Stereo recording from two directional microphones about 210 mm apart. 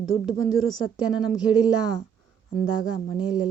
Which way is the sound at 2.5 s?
Centre (ahead or behind).